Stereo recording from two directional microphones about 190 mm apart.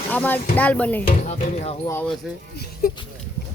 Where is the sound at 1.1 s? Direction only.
35° left (ahead or behind).